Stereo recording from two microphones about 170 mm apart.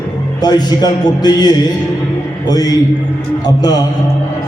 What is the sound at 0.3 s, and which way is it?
A man's voice, 25° left (ahead or behind).